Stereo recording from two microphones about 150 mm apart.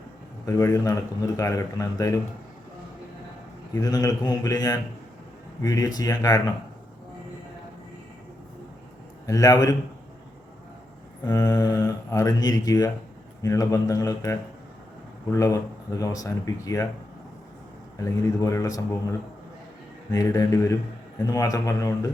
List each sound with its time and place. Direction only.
0.4 s speech: 20° left (ahead or behind)
3.8 s speech: 25° left (ahead or behind)
9.2 s speech: 25° left (ahead or behind)
11.3 s speech: 25° left (ahead or behind)
18.0 s speech: 20° left (ahead or behind)
20.1 s speech: 25° left (ahead or behind)